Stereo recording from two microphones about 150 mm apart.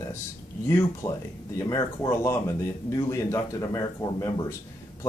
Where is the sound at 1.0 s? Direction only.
25° left (ahead or behind).